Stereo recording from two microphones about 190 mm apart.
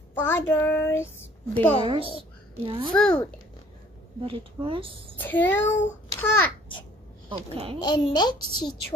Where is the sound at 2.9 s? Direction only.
5° left (ahead or behind).